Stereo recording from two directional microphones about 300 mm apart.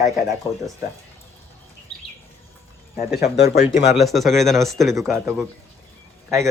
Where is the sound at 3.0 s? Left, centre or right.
Left.